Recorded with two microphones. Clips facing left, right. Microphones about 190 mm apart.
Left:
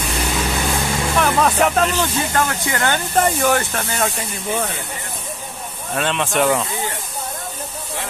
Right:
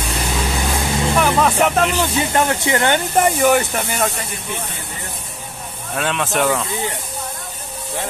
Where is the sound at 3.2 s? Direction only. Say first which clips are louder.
Right 2 dB; 10° right (ahead or behind).